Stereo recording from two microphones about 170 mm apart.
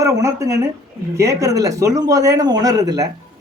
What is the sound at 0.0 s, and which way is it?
Speech, 20° right (ahead or behind).